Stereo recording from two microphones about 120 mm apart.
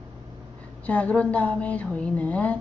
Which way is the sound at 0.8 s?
10° left (ahead or behind).